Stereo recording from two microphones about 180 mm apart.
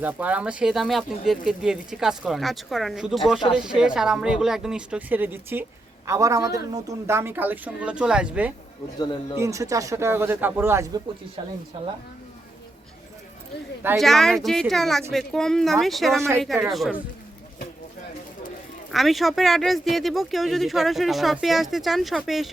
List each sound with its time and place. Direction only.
0.0 s speech: 10° right (ahead or behind)
9.0 s speech: 25° left (ahead or behind)
9.4 s speech: 15° right (ahead or behind)
11.4 s speech: 30° right (ahead or behind)
14.0 s speech: centre (ahead or behind)
18.9 s speech: centre (ahead or behind)